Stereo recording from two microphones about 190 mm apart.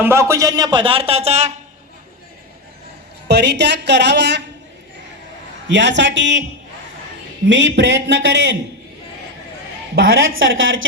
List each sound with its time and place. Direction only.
0.0 s speech: 15° right (ahead or behind); by 1.5 s 35° right (ahead or behind)
3.2 s a woman's voice: 65° right (ahead or behind)
5.6 s a man's voice: 70° right (ahead or behind)
7.4 s a man's voice: 70° right (ahead or behind)
10.3 s a woman's voice: 90° right